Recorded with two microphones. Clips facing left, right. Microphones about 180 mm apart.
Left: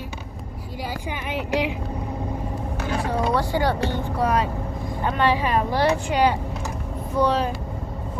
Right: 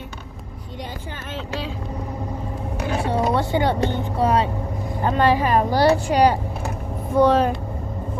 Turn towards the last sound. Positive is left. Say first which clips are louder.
# right 5 dB
turn(degrees=-50)  # may be behind; listen again after turning